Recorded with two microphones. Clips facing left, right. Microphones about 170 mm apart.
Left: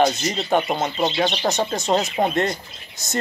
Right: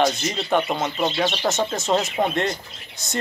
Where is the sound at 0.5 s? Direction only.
35° left (ahead or behind).